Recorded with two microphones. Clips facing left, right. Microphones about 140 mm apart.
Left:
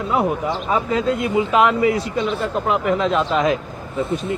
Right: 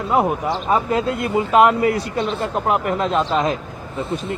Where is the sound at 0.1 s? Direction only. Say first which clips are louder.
Right 2 dB; 40° right (ahead or behind).